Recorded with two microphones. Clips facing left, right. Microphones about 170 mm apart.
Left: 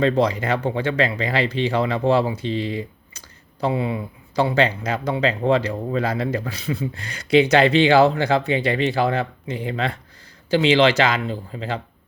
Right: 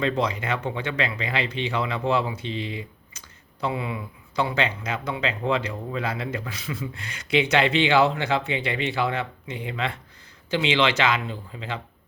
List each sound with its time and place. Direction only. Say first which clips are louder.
0.0 s speech: left 6 dB; 35° left (ahead or behind)